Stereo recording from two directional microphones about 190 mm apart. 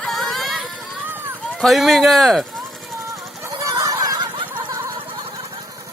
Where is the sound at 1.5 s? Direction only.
Centre (ahead or behind).